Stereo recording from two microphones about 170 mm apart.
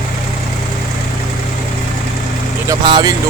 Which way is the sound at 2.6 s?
25° right (ahead or behind).